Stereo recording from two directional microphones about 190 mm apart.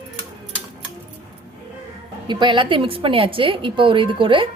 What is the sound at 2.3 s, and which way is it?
A woman's voice, 25° right (ahead or behind).